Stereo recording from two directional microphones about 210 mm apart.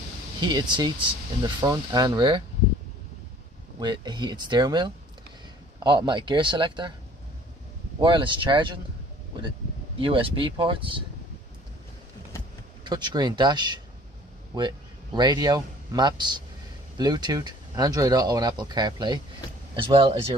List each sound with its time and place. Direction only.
0.4 s speech: 20° right (ahead or behind)
3.8 s speech: 20° right (ahead or behind)
8.0 s speech: 25° right (ahead or behind)
9.9 s speech: 25° right (ahead or behind)
12.8 s speech: 20° right (ahead or behind)